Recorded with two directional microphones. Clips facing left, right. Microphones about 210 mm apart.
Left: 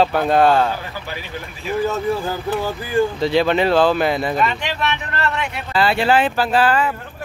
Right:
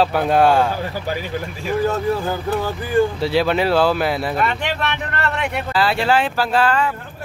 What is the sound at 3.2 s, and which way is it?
Speech, 5° right (ahead or behind).